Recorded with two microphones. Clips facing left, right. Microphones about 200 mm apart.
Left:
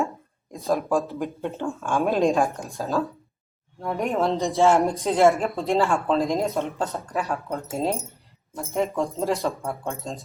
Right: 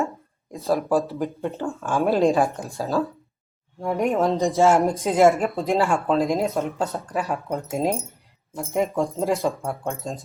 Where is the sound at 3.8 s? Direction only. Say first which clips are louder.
Right 3 dB; 15° right (ahead or behind).